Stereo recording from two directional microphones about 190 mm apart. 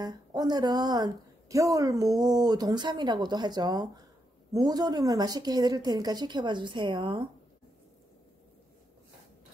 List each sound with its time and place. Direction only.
0.0 s a woman's voice: 20° right (ahead or behind)